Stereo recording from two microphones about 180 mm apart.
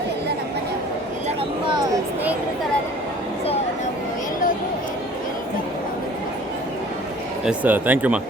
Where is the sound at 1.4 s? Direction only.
25° right (ahead or behind).